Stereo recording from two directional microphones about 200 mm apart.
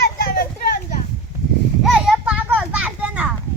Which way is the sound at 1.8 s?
Centre (ahead or behind).